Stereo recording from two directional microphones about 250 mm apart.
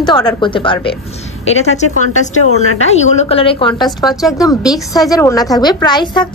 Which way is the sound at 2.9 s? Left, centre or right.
Left.